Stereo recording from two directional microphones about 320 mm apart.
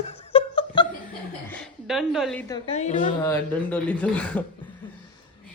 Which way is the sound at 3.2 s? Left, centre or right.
Centre.